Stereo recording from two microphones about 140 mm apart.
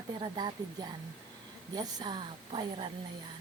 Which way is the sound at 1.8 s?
30° right (ahead or behind).